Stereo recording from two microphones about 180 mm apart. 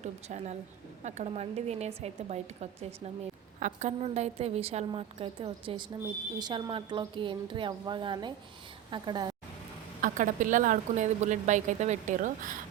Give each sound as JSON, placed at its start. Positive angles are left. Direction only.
{"t": 0.0, "sound": "a woman's voice", "side_deg": -40}
{"t": 10.0, "sound": "speech", "side_deg": -45}